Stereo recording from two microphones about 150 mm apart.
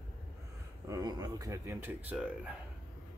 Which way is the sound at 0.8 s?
25° right (ahead or behind).